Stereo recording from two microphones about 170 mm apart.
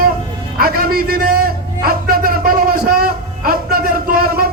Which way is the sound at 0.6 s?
60° right (ahead or behind).